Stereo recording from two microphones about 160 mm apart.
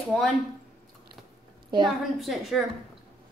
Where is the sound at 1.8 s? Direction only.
Centre (ahead or behind).